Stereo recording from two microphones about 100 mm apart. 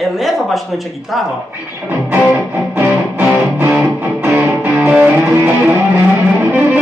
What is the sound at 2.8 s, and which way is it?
Music, 15° right (ahead or behind).